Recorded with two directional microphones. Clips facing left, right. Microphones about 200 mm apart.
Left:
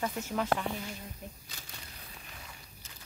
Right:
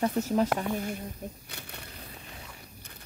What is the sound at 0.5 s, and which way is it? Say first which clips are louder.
Speech: right 6 dB; 50° right (ahead or behind).